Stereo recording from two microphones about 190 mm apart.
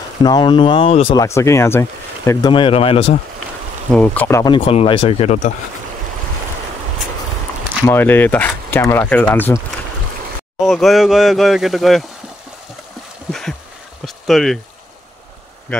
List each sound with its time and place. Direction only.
0.2 s speech: 25° left (ahead or behind)
1.2 s speech: 15° left (ahead or behind)
2.5 s speech: 30° left (ahead or behind)
3.9 s speech: 5° left (ahead or behind)
4.6 s speech: 30° left (ahead or behind)
7.8 s speech: 10° left (ahead or behind)
10.6 s speech: centre (ahead or behind)
13.3 s a sound: centre (ahead or behind)
14.0 s speech: centre (ahead or behind)